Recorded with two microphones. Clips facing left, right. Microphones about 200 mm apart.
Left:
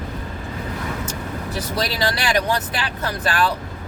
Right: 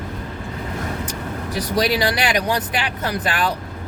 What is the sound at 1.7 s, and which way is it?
Speech, 15° right (ahead or behind).